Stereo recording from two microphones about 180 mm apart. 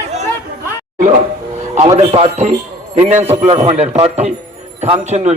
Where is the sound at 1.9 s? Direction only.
35° right (ahead or behind).